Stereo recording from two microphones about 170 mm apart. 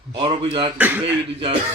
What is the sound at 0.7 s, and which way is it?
Speech, 10° right (ahead or behind).